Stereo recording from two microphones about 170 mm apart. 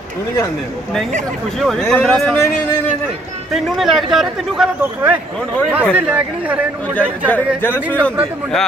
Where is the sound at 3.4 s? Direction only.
Centre (ahead or behind).